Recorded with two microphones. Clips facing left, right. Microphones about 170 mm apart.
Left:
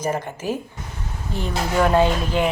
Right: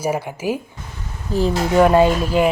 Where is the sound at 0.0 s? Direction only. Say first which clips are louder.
Right 3 dB; 10° right (ahead or behind).